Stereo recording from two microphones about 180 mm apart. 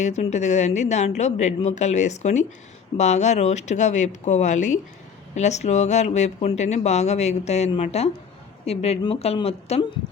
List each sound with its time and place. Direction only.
0.0 s speech: 40° left (ahead or behind)